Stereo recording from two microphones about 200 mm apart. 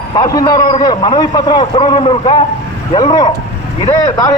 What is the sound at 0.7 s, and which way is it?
A man's voice, 25° left (ahead or behind).